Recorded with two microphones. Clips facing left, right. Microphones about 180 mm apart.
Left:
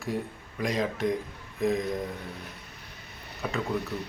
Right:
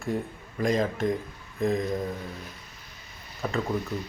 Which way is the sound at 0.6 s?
Centre (ahead or behind).